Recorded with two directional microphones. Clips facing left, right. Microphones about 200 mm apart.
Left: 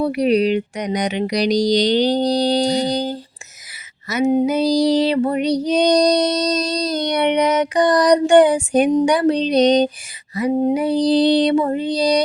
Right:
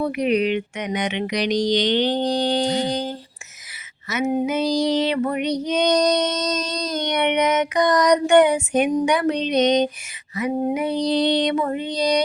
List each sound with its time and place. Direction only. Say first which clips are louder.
0.0 s female singing: left 4 dB; 35° left (ahead or behind)